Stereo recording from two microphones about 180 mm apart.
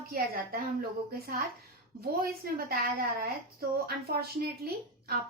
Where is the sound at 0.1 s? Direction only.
55° right (ahead or behind).